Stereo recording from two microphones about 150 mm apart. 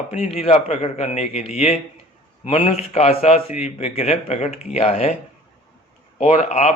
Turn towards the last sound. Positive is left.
turn(degrees=45)  # may be behind; listen again after turning